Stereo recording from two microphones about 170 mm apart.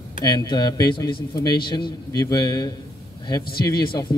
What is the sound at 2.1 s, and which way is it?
Speech, 25° left (ahead or behind).